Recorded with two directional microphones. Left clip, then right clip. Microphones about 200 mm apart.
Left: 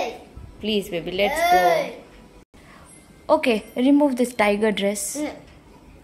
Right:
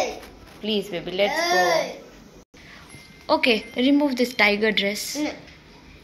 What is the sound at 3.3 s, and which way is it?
A woman's voice, 20° left (ahead or behind).